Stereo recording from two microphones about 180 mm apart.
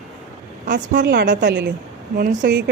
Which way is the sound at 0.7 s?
70° right (ahead or behind).